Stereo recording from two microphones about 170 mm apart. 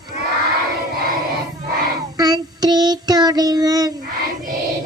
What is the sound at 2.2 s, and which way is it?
Child singing, 25° right (ahead or behind).